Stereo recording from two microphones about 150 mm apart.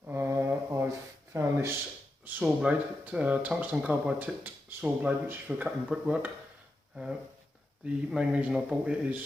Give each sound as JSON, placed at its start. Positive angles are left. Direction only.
{"t": 0.0, "sound": "mantra", "side_deg": -15}
{"t": 1.3, "sound": "speech", "side_deg": -15}
{"t": 8.1, "sound": "speech", "side_deg": -5}